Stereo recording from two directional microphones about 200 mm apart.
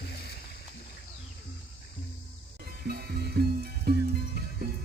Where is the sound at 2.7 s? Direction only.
50° right (ahead or behind).